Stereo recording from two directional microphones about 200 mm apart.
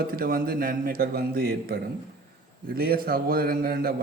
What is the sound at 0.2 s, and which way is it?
A man's voice, 45° right (ahead or behind).